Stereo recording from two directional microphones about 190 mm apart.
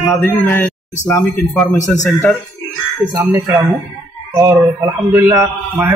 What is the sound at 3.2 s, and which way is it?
Speech, 10° right (ahead or behind).